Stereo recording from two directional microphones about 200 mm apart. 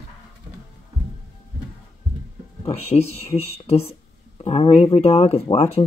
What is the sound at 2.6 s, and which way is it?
Speech, 30° left (ahead or behind).